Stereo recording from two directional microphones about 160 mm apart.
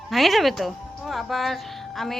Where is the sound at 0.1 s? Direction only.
Centre (ahead or behind).